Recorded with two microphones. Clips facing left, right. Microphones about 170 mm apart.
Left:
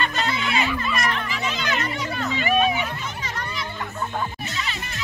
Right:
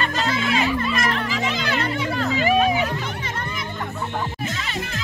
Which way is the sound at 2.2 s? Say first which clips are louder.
Right 2 dB; 40° right (ahead or behind).